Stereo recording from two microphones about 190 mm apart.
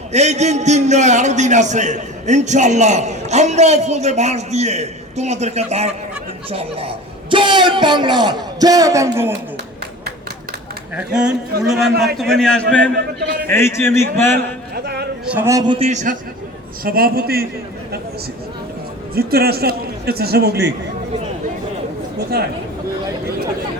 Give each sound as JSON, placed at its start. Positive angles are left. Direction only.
{"t": 0.1, "sound": "a man's voice", "side_deg": -35}
{"t": 10.9, "sound": "a man's voice", "side_deg": -5}
{"t": 13.1, "sound": "a man's voice", "side_deg": -55}
{"t": 13.5, "sound": "a man's voice", "side_deg": 15}
{"t": 14.3, "sound": "a sound", "side_deg": -55}
{"t": 15.3, "sound": "a man's voice", "side_deg": -10}
{"t": 15.9, "sound": "a man's voice", "side_deg": -40}
{"t": 16.8, "sound": "a man's voice", "side_deg": -50}
{"t": 19.1, "sound": "a man's voice", "side_deg": -55}
{"t": 22.3, "sound": "a man's voice", "side_deg": -55}